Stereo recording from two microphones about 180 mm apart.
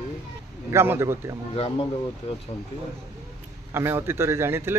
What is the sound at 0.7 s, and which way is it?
Speech, 15° right (ahead or behind).